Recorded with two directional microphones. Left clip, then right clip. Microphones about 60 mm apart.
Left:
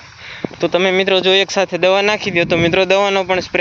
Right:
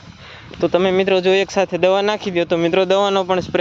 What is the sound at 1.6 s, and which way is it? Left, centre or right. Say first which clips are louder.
Speech: left 1 dB; right.